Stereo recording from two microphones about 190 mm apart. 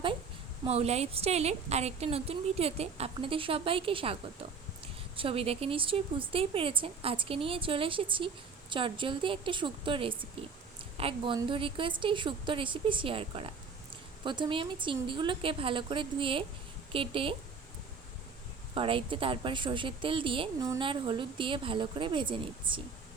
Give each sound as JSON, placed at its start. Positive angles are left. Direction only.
{"t": 0.6, "sound": "a woman's voice", "side_deg": -30}
{"t": 18.7, "sound": "a woman's voice", "side_deg": -30}